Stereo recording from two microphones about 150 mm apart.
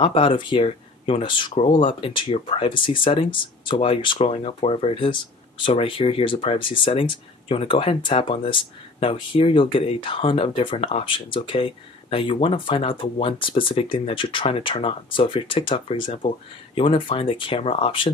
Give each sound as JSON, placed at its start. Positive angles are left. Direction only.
{"t": 0.0, "sound": "speech", "side_deg": 35}